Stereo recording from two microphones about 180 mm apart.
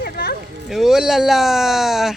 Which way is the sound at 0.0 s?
65° left (ahead or behind).